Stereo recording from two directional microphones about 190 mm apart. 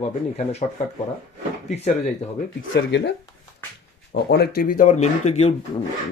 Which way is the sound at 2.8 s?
65° left (ahead or behind).